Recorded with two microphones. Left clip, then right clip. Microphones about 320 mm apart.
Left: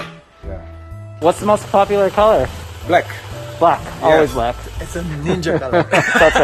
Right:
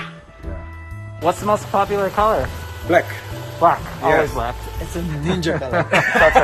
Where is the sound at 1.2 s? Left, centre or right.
Left.